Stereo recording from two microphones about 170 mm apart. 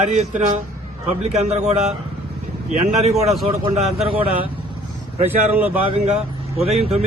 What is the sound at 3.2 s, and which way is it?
Speech, centre (ahead or behind).